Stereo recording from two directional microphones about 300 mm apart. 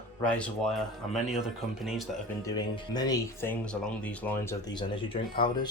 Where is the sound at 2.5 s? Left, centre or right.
Centre.